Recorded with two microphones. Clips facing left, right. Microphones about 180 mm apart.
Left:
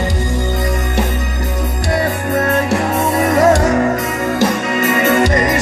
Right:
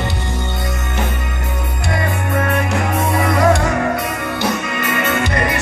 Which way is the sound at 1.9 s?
40° left (ahead or behind).